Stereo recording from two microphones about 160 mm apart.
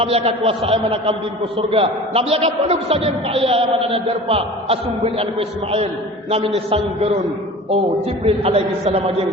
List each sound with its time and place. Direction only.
0.0 s a man's voice: 40° right (ahead or behind)
8.2 s a man's voice: 40° right (ahead or behind)